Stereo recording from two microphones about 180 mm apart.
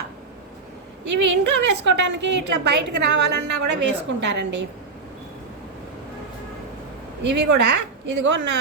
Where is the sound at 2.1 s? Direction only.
75° right (ahead or behind).